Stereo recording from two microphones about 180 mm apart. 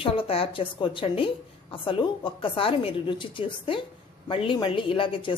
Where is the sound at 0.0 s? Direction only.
30° left (ahead or behind).